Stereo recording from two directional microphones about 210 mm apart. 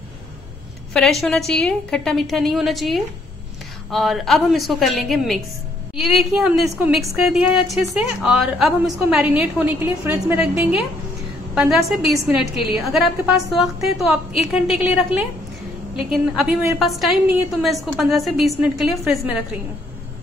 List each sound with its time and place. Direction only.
0.9 s a woman's voice: centre (ahead or behind)